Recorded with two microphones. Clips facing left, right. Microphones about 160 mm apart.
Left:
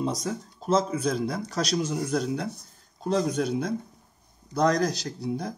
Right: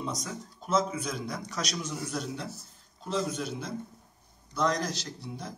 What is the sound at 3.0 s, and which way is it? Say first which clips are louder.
Speech: left 6 dB; 40° left (ahead or behind).